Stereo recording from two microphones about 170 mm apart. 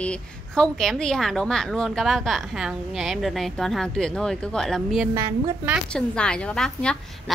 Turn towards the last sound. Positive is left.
turn(degrees=5)  # may be behind; listen again after turning